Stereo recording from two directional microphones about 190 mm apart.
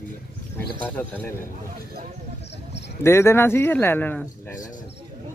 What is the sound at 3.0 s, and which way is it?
Speech, 15° left (ahead or behind).